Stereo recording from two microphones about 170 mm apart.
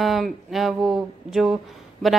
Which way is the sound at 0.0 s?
Centre (ahead or behind).